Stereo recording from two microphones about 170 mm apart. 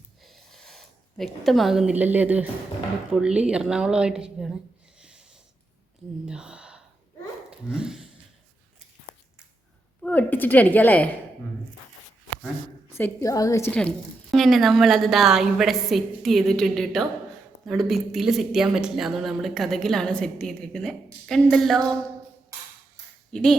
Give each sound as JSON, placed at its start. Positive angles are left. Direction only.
{"t": 0.3, "sound": "a sound", "side_deg": 0}
{"t": 3.1, "sound": "speech", "side_deg": -5}
{"t": 4.9, "sound": "a sound", "side_deg": -5}
{"t": 6.2, "sound": "gasp", "side_deg": -5}
{"t": 7.7, "sound": "speech", "side_deg": -5}
{"t": 10.0, "sound": "a woman's voice", "side_deg": 10}
{"t": 12.9, "sound": "a woman's voice", "side_deg": 15}
{"t": 13.7, "sound": "speech", "side_deg": 5}
{"t": 23.3, "sound": "speech", "side_deg": 5}